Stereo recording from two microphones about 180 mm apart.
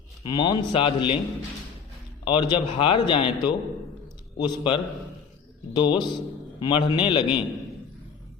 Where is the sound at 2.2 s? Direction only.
25° left (ahead or behind).